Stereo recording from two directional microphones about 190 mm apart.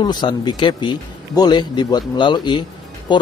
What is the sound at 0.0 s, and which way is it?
Speech, 20° left (ahead or behind).